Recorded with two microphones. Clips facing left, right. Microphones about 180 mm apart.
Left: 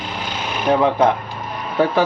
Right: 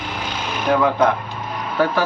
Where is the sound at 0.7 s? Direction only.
25° left (ahead or behind).